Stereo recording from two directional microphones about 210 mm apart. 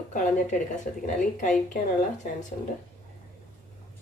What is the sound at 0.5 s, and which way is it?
A woman's voice, 35° left (ahead or behind).